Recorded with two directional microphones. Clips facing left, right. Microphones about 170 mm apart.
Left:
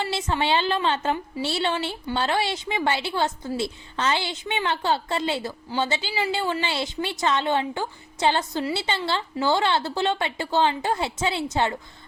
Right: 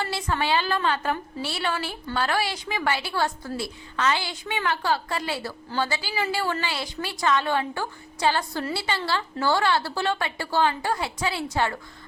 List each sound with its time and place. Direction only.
0.0 s a woman's voice: 25° left (ahead or behind)